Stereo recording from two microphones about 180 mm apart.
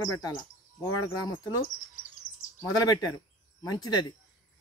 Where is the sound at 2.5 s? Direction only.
20° left (ahead or behind).